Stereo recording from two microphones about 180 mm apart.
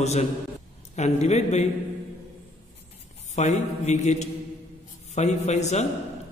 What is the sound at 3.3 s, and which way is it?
A man's voice, 40° left (ahead or behind).